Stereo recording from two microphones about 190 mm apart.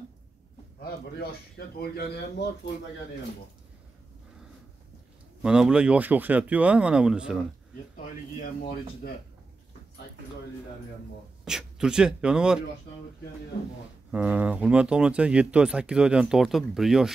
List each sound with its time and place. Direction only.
0.7 s a man's voice: 55° left (ahead or behind)
5.4 s speech: 5° right (ahead or behind)
11.4 s speech: 5° right (ahead or behind)
14.1 s speech: 10° right (ahead or behind)